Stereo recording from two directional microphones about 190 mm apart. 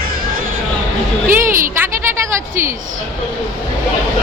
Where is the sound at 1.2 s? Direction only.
45° right (ahead or behind).